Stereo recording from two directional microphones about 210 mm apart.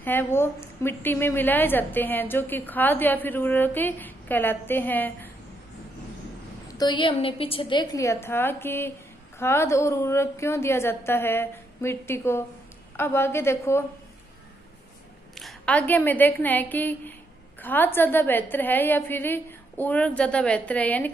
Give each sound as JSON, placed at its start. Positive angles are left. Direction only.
{"t": 0.0, "sound": "a woman's voice", "side_deg": 10}
{"t": 6.8, "sound": "a woman's voice", "side_deg": 20}
{"t": 15.3, "sound": "a woman's voice", "side_deg": 5}